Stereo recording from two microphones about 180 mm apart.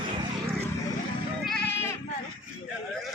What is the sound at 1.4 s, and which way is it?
Goat, centre (ahead or behind).